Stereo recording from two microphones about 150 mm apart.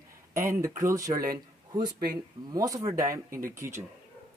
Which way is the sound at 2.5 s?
25° right (ahead or behind).